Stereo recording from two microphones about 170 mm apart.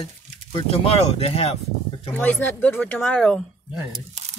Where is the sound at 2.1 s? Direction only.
10° left (ahead or behind).